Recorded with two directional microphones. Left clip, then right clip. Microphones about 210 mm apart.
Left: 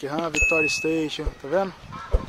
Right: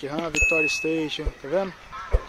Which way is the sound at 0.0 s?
Centre (ahead or behind).